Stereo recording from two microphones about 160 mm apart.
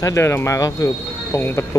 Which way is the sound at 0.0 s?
15° left (ahead or behind).